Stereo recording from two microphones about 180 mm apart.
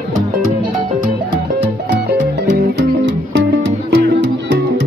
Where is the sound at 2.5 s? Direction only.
80° right.